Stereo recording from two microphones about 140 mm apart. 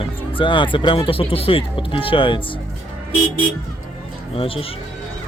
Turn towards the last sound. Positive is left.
turn(degrees=40)  # may be behind; listen again after turning